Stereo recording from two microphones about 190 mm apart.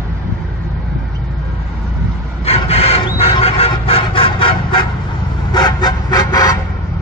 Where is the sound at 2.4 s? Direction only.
30° left (ahead or behind).